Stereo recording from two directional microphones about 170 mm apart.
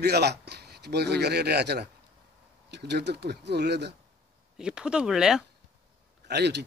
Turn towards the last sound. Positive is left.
turn(degrees=-80)